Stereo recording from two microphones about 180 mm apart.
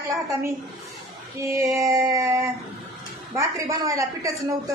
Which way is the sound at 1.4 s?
15° right (ahead or behind).